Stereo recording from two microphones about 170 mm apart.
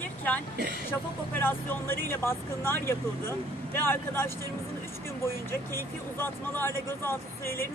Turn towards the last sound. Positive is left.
turn(degrees=15)  # may be behind; listen again after turning